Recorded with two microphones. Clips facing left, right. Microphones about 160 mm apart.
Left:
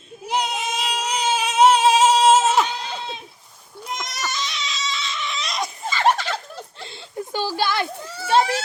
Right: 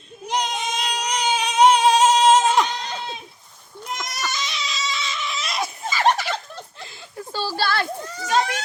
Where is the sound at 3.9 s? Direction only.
5° right (ahead or behind).